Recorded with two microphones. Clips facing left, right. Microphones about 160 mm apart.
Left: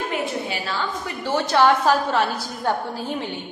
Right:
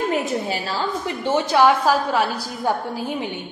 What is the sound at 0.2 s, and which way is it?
Speech, 35° right (ahead or behind).